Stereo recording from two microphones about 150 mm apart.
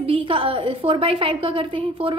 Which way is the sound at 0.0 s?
35° right (ahead or behind).